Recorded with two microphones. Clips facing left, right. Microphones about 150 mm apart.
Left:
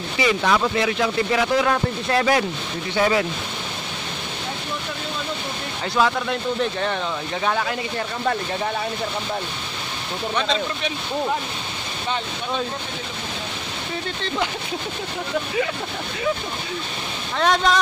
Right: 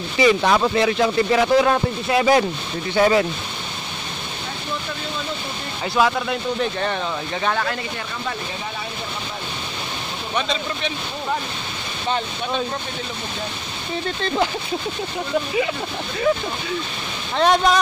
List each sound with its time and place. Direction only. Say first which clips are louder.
0.2 s speech: right 4 dB; 30° right (ahead or behind)
2.0 s speech: right 2 dB; 10° right (ahead or behind)
3.0 s speech: right 3 dB; 35° right (ahead or behind)
5.9 s speech: right 1 dB; 5° right (ahead or behind)
7.4 s speech: even; 10° left (ahead or behind)
17.4 s speech: right 3 dB; 20° right (ahead or behind)